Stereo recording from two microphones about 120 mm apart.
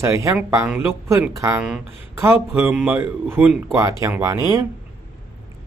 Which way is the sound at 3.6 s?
25° right (ahead or behind).